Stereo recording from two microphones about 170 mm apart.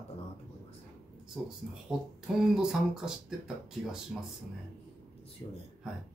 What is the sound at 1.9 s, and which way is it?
Speech, 5° right (ahead or behind).